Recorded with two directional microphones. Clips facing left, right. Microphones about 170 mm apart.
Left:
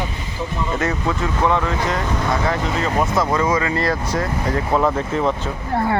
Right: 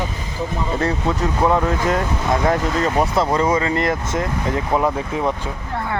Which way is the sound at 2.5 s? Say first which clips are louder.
Right 2 dB; 40° right (ahead or behind).